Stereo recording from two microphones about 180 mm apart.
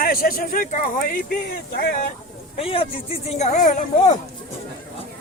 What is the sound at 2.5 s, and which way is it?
Speech, 30° left (ahead or behind).